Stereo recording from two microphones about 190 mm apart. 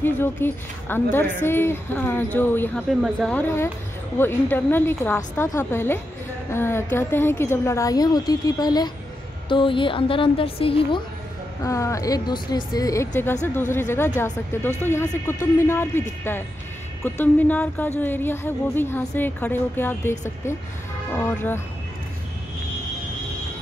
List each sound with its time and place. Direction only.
0.0 s speech: 10° left (ahead or behind)
2.9 s speech: centre (ahead or behind)
3.3 s a woman's voice: 10° left (ahead or behind); by 11.0 s 30° left (ahead or behind)
11.6 s speech: 15° left (ahead or behind)